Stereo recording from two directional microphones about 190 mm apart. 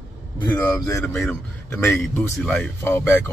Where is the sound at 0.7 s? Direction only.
15° left (ahead or behind).